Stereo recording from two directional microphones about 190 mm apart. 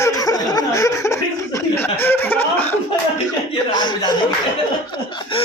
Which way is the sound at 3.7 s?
20° left (ahead or behind).